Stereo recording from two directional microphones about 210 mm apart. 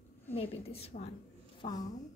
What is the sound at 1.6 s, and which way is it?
Speech, 20° left (ahead or behind).